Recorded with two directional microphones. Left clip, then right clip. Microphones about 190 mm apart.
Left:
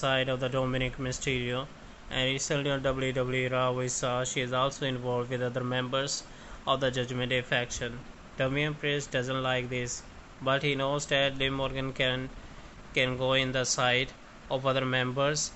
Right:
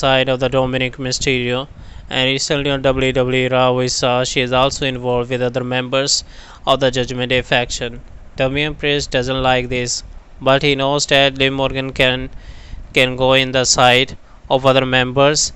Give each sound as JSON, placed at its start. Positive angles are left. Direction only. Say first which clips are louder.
{"t": 0.0, "sound": "speech", "louder": "right 14 dB", "side_deg": -45}
{"t": 9.8, "sound": "speech", "louder": "right 16 dB", "side_deg": -55}